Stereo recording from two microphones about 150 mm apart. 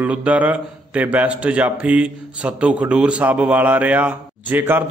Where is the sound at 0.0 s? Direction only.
10° right (ahead or behind).